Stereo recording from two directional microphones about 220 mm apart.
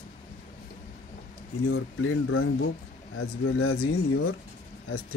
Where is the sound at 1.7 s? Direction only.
65° left (ahead or behind).